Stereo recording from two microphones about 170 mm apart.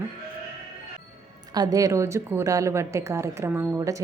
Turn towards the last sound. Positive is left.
turn(degrees=-20)  # may be behind; listen again after turning